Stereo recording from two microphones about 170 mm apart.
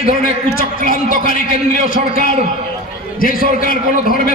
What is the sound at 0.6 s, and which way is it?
Speech, 55° left (ahead or behind).